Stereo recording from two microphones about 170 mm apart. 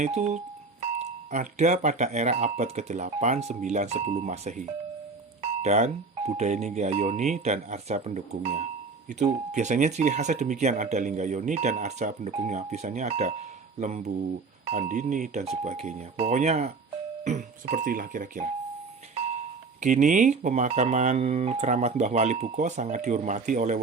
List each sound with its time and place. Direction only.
0.0 s speech: 40° right (ahead or behind)
19.8 s speech: 45° right (ahead or behind)